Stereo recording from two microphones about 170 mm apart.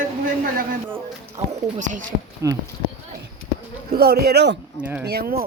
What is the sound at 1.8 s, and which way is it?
Speech, 45° right (ahead or behind).